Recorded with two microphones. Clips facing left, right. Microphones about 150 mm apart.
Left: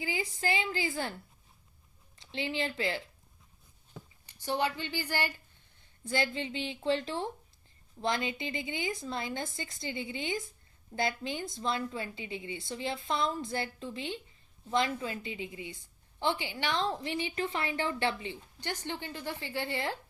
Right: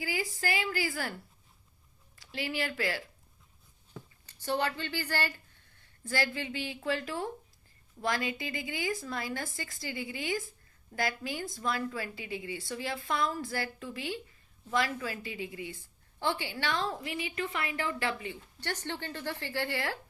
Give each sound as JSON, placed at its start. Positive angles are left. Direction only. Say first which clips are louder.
{"t": 0.0, "sound": "a sound", "louder": "even", "side_deg": 20}
{"t": 2.1, "sound": "speech", "louder": "left 1 dB", "side_deg": 25}
{"t": 4.3, "sound": "a woman's voice", "louder": "even", "side_deg": 15}
{"t": 18.9, "sound": "a woman's voice", "louder": "right 1 dB", "side_deg": 15}